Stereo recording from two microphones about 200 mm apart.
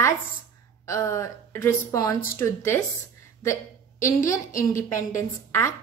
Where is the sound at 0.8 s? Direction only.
15° left (ahead or behind).